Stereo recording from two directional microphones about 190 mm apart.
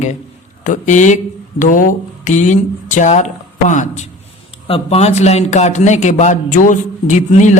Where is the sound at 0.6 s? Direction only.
40° left (ahead or behind).